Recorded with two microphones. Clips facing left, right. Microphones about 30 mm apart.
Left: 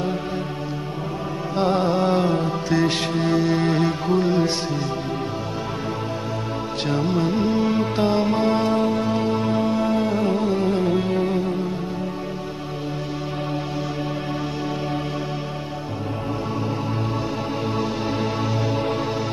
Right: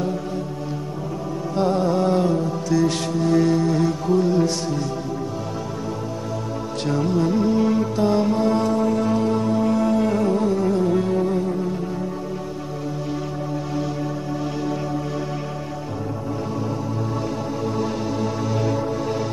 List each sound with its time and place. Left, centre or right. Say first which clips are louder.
1.6 s music: even; left
6.9 s music: right 2 dB; left
17.7 s music: even; left